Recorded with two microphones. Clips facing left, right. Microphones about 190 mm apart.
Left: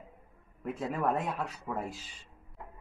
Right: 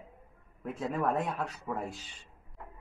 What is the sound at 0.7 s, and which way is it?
Speech, centre (ahead or behind).